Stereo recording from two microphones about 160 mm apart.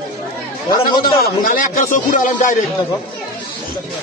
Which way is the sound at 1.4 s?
60° left (ahead or behind).